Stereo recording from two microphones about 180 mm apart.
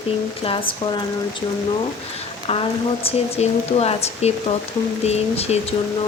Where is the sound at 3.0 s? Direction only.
35° left (ahead or behind).